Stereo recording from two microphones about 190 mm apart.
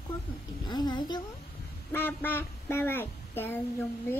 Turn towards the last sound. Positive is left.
turn(degrees=10)  # may be behind; listen again after turning